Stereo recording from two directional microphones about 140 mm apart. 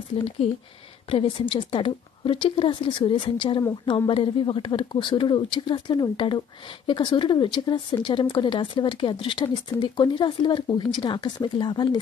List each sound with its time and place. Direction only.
0.4 s speech: 45° left (ahead or behind)